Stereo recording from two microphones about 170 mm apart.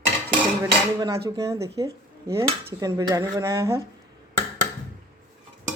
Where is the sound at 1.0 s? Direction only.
20° right (ahead or behind).